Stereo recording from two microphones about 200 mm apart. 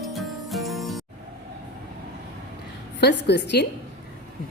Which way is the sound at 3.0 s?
55° left (ahead or behind).